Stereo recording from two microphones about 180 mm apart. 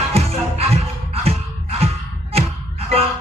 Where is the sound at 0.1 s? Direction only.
35° right (ahead or behind).